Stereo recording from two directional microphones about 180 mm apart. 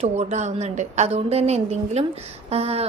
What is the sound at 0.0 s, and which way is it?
A woman's voice, 40° right (ahead or behind).